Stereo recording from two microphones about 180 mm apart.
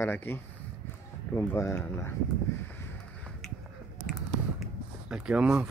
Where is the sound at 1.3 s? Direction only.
15° left (ahead or behind).